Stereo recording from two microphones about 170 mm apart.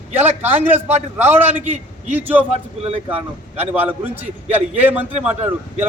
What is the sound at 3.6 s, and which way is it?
A man's voice, 10° right (ahead or behind).